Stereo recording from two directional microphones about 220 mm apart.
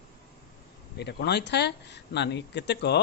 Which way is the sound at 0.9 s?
50° left (ahead or behind).